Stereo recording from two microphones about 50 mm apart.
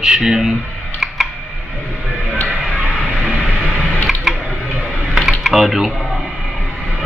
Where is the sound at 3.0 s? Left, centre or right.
Right.